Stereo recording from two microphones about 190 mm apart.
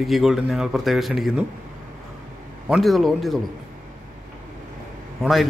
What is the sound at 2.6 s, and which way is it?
Speech, centre (ahead or behind).